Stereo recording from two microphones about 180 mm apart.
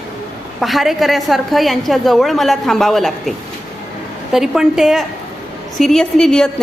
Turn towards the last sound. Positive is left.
turn(degrees=5)  # may be behind; listen again after turning